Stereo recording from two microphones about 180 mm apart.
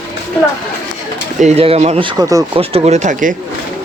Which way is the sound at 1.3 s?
35° right (ahead or behind).